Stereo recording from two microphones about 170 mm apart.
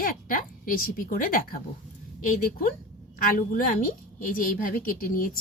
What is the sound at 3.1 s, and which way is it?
A woman's voice, 55° left (ahead or behind).